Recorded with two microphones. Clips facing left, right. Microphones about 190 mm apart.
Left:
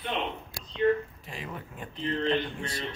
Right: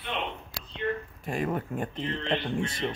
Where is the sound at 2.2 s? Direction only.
40° left (ahead or behind).